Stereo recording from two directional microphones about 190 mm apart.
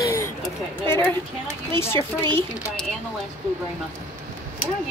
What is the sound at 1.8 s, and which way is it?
Speech, 15° left (ahead or behind).